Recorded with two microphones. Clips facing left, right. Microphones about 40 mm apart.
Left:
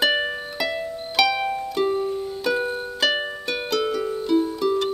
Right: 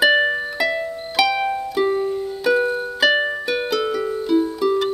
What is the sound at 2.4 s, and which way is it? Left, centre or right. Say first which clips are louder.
Music: right 7 dB; centre.